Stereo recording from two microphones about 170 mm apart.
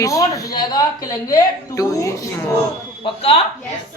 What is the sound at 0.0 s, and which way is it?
A man's voice, 20° left (ahead or behind).